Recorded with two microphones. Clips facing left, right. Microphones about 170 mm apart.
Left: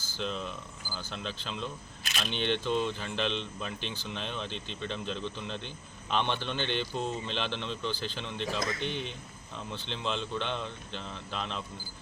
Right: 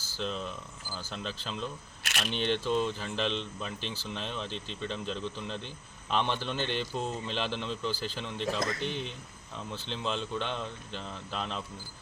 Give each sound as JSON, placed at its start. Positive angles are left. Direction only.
{"t": 0.2, "sound": "a man's voice", "side_deg": 0}
{"t": 2.0, "sound": "single-lens reflex camera", "side_deg": -80}
{"t": 2.5, "sound": "a man's voice", "side_deg": 0}
{"t": 8.8, "sound": "speech", "side_deg": -35}
{"t": 9.6, "sound": "a man's voice", "side_deg": 0}